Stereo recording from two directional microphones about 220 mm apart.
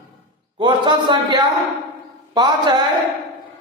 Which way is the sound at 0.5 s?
20° right (ahead or behind).